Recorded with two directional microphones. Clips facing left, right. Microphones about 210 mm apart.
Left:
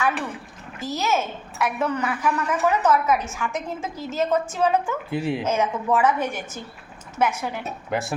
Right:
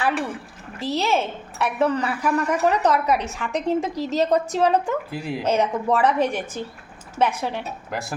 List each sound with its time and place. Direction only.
0.8 s a woman's voice: 30° right (ahead or behind)
5.1 s speech: centre (ahead or behind)
5.4 s a woman's voice: 35° right (ahead or behind)
7.9 s speech: centre (ahead or behind)